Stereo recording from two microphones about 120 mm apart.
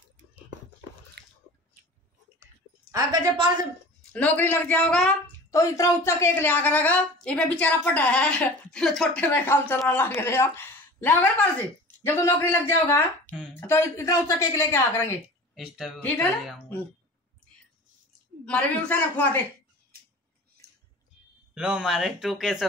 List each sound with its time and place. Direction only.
2.4 s a sound: 30° right (ahead or behind)
4.1 s a woman's voice: 15° left (ahead or behind)
5.5 s a woman's voice: 25° left (ahead or behind)
15.5 s speech: 5° right (ahead or behind)
18.4 s a woman's voice: 15° left (ahead or behind)
21.5 s speech: 5° right (ahead or behind)